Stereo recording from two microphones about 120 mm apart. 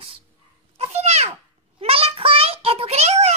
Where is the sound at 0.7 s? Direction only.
65° right (ahead or behind).